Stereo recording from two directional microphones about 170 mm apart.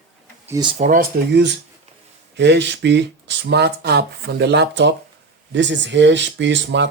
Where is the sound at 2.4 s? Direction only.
90° right.